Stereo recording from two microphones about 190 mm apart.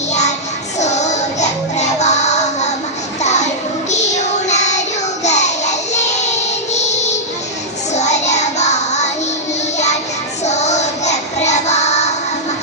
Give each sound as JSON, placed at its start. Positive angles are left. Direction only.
{"t": 0.1, "sound": "child singing", "side_deg": 35}
{"t": 5.2, "sound": "music", "side_deg": 35}
{"t": 7.9, "sound": "child singing", "side_deg": 35}
{"t": 10.4, "sound": "child singing", "side_deg": 35}